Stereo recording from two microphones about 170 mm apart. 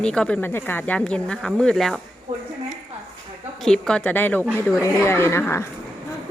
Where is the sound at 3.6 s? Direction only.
5° left (ahead or behind).